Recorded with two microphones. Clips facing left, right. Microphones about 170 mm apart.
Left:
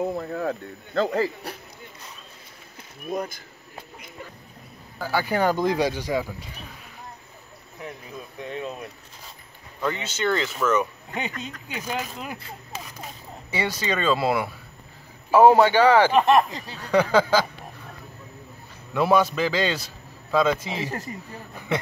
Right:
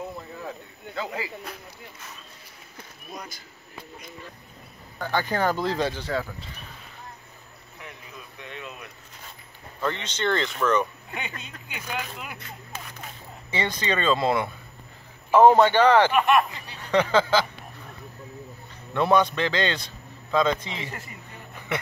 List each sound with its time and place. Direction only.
0.0 s speech: 55° left (ahead or behind)
3.1 s speech: 50° left (ahead or behind)
4.9 s a man's voice: 5° left (ahead or behind)
8.4 s a sound: 35° left (ahead or behind)
9.8 s a man's voice: 5° left (ahead or behind)
11.1 s speech: 35° left (ahead or behind)
13.5 s a man's voice: 10° left (ahead or behind)
16.1 s speech: 35° left (ahead or behind)
16.9 s a man's voice: 10° left (ahead or behind)
18.9 s a man's voice: 5° left (ahead or behind)
20.7 s speech: 40° left (ahead or behind)